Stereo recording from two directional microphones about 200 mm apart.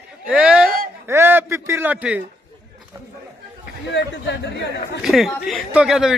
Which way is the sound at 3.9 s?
60° left (ahead or behind).